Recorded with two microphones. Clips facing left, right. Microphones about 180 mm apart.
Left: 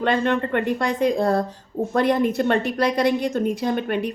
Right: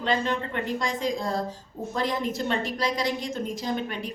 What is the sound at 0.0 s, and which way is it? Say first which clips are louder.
Speech: left 6 dB; 60° left (ahead or behind).